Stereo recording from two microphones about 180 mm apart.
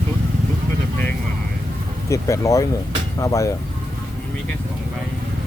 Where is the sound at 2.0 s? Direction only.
15° left (ahead or behind).